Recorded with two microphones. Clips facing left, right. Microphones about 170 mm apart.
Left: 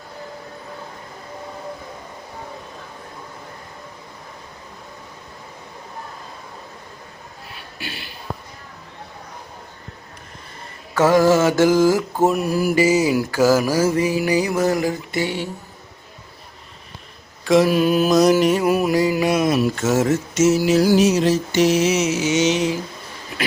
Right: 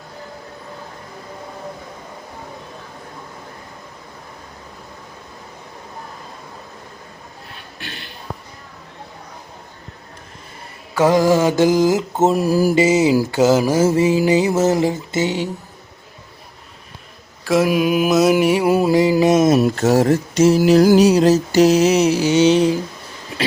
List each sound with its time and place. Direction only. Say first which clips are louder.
7.8 s a sound: left 2 dB; 5° left (ahead or behind)
10.9 s mantra: even; 15° right (ahead or behind)
12.4 s mantra: right 4 dB; 35° right (ahead or behind)
12.7 s mantra: even; 25° right (ahead or behind)
17.4 s mantra: left 1 dB; centre (ahead or behind)
18.6 s mantra: right 3 dB; 25° right (ahead or behind)
19.3 s mantra: right 5 dB; 45° right (ahead or behind)
20.6 s music: right 5 dB; 50° right (ahead or behind)
21.0 s mantra: right 4 dB; 35° right (ahead or behind)